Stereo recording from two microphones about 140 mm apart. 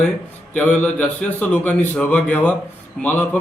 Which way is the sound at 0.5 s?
10° left (ahead or behind).